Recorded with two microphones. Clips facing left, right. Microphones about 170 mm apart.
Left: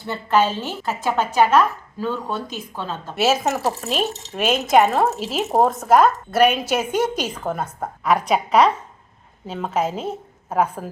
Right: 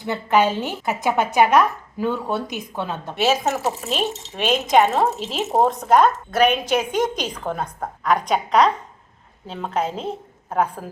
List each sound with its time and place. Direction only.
0.0 s speech: 15° right (ahead or behind)
3.2 s speech: centre (ahead or behind)